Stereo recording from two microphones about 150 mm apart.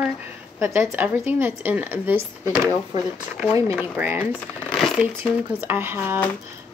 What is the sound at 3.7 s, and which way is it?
Speech, 10° right (ahead or behind).